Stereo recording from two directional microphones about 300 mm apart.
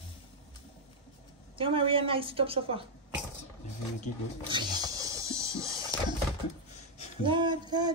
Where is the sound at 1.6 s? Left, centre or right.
Centre.